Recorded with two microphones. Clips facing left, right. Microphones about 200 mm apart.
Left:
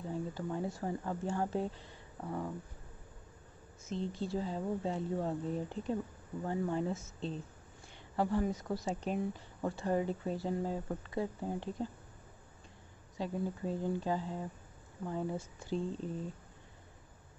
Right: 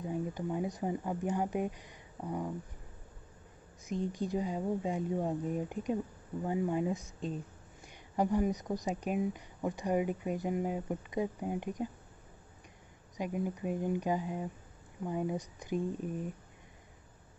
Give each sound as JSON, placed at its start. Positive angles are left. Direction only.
{"t": 0.0, "sound": "speech", "side_deg": -15}
{"t": 3.8, "sound": "speech", "side_deg": -15}
{"t": 13.2, "sound": "speech", "side_deg": -15}